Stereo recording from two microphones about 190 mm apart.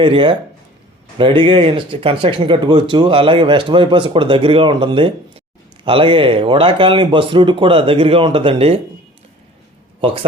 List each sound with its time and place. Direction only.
0.0 s speech: 25° right (ahead or behind)